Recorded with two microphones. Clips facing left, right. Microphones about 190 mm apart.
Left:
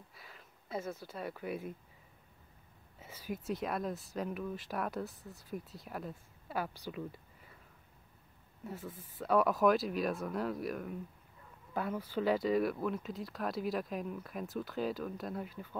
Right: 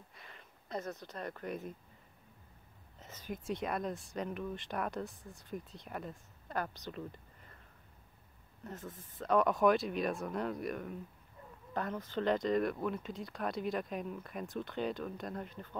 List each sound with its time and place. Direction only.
0.1 s a sound: 5° left (ahead or behind)
3.0 s speech: 10° left (ahead or behind)
8.6 s speech: 10° left (ahead or behind)